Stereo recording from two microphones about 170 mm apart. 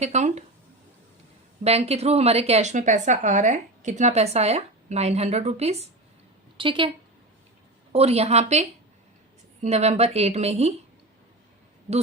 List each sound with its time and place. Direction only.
0.0 s a woman's voice: 40° right (ahead or behind)
1.6 s a woman's voice: 35° right (ahead or behind)
7.9 s a woman's voice: 35° right (ahead or behind)